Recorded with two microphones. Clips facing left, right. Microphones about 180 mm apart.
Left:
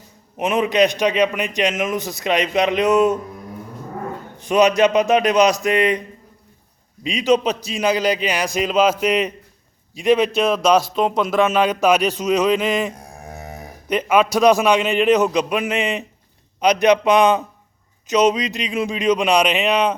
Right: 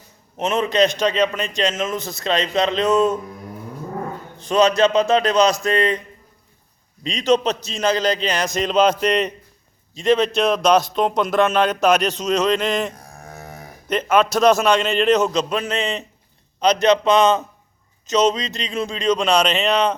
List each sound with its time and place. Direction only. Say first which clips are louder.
0.3 s a man's voice: left 1 dB; 10° left (ahead or behind)
4.4 s a man's voice: left 1 dB; 15° left (ahead or behind)
7.0 s a man's voice: left 1 dB; 10° left (ahead or behind)